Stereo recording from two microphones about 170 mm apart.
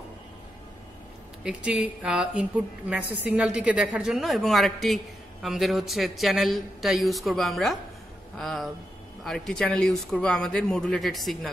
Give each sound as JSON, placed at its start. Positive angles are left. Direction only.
{"t": 1.4, "sound": "a woman's voice", "side_deg": -5}